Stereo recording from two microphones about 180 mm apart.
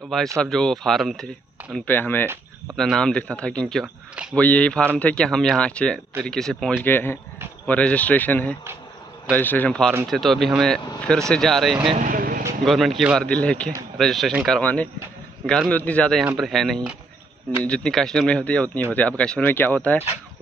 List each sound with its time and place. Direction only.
0.4 s speech: 5° left (ahead or behind)
4.4 s speech: 5° left (ahead or behind)
12.0 s vehicle: 50° right (ahead or behind)
12.6 s speech: centre (ahead or behind)